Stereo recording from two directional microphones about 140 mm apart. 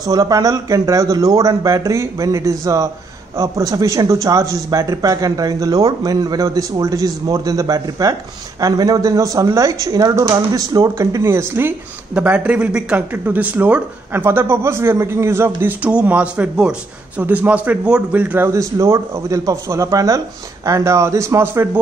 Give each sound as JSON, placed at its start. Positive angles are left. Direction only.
{"t": 0.0, "sound": "speech", "side_deg": -25}